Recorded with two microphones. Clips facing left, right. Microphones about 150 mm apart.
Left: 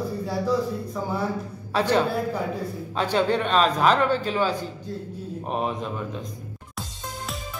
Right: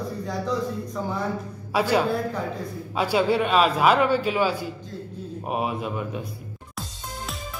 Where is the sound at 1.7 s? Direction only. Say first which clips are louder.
Even; 10° right (ahead or behind).